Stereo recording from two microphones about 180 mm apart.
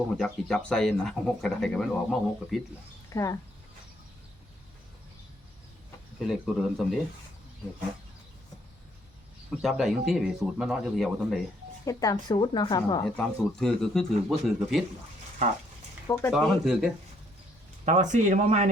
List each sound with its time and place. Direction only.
0.2 s speech: 5° left (ahead or behind)
3.1 s speech: 15° left (ahead or behind)
6.2 s speech: 5° right (ahead or behind)
9.6 s speech: centre (ahead or behind)
11.9 s a woman's voice: 20° left (ahead or behind)
13.1 s speech: 5° left (ahead or behind)
16.0 s speech: 15° left (ahead or behind)
16.3 s speech: 5° right (ahead or behind)
17.8 s speech: 40° right (ahead or behind)